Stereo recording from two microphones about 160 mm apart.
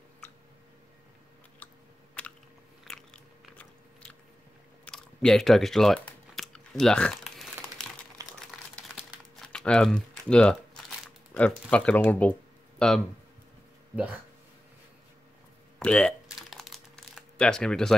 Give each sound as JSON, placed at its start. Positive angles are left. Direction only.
{"t": 2.2, "sound": "biting", "side_deg": 10}
{"t": 4.8, "sound": "a sound", "side_deg": 5}
{"t": 8.2, "sound": "crumpling", "side_deg": -20}
{"t": 9.4, "sound": "speech", "side_deg": 5}
{"t": 15.8, "sound": "crumpling", "side_deg": 5}